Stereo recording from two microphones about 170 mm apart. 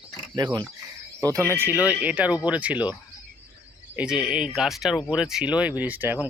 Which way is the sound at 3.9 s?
5° right (ahead or behind).